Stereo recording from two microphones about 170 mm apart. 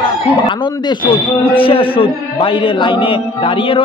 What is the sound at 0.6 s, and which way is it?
A man's voice, 25° left (ahead or behind).